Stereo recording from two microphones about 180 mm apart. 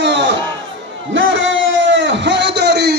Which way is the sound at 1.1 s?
90° right.